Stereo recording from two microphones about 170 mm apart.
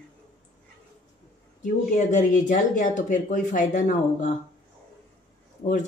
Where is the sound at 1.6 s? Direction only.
45° left (ahead or behind).